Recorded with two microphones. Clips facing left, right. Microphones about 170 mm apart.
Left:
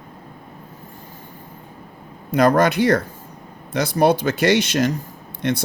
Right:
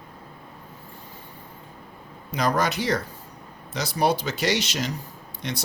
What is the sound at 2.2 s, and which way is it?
Speech, 55° left (ahead or behind).